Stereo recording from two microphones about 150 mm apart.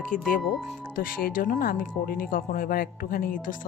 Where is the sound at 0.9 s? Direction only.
75° left (ahead or behind).